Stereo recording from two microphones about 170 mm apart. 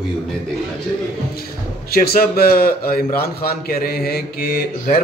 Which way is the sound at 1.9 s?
60° left (ahead or behind).